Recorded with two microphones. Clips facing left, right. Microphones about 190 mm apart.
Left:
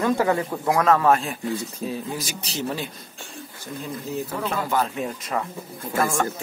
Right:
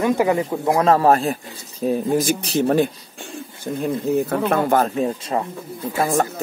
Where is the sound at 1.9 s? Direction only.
50° right (ahead or behind).